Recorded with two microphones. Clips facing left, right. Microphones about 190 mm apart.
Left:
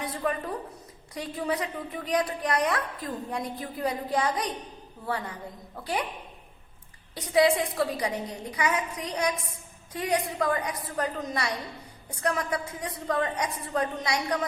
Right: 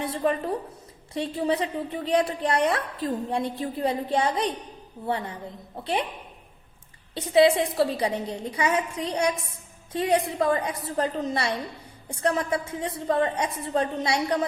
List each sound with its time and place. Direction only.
0.0 s a woman's voice: 30° right (ahead or behind)
7.1 s a woman's voice: 25° right (ahead or behind)